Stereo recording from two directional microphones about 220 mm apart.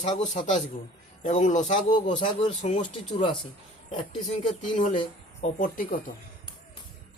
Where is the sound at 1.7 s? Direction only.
20° left (ahead or behind).